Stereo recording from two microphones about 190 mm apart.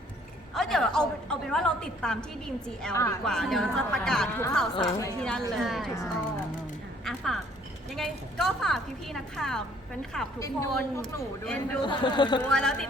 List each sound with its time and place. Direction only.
0.5 s a sound: centre (ahead or behind)
2.9 s a woman's voice: 15° left (ahead or behind)
3.2 s a woman's voice: centre (ahead or behind)
4.7 s a woman's voice: 20° left (ahead or behind)
5.2 s a woman's voice: centre (ahead or behind)
7.0 s a woman's voice: centre (ahead or behind)
10.4 s a woman's voice: 15° left (ahead or behind)
11.0 s a woman's voice: 5° left (ahead or behind)
11.8 s a man's voice: 25° left (ahead or behind)
12.4 s a woman's voice: 5° left (ahead or behind)